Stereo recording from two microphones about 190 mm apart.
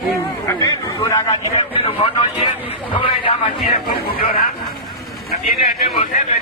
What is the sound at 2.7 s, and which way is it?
Speech, 30° left (ahead or behind).